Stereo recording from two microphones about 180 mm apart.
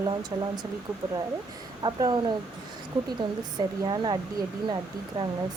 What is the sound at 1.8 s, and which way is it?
Speech, 20° right (ahead or behind).